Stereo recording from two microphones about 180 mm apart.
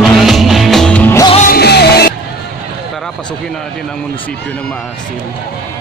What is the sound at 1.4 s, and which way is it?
Music, 60° left (ahead or behind).